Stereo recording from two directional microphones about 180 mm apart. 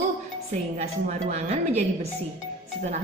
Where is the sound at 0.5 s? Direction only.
40° right (ahead or behind).